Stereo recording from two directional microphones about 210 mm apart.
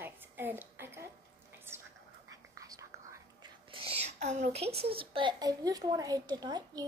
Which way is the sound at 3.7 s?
25° right (ahead or behind).